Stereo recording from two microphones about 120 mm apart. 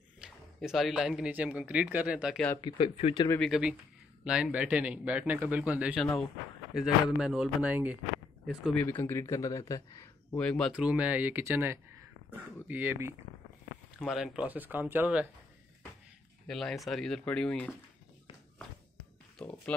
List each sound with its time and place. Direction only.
0.2 s speech: centre (ahead or behind)
2.6 s speech: 55° left (ahead or behind)
3.3 s a man's voice: centre (ahead or behind)
5.9 s speech: centre (ahead or behind); by 8.0 s 15° right (ahead or behind)
8.7 s speech: 15° left (ahead or behind)
10.3 s speech: 5° left (ahead or behind)
10.7 s a man's voice: 10° right (ahead or behind)
13.9 s a man's voice: 5° right (ahead or behind)
16.4 s speech: 5° left (ahead or behind)
19.3 s speech: 10° left (ahead or behind)